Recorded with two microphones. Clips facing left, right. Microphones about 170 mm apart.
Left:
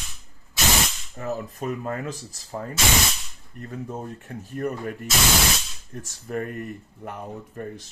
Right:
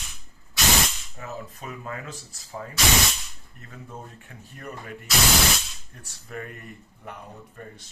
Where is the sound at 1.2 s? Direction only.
40° left (ahead or behind).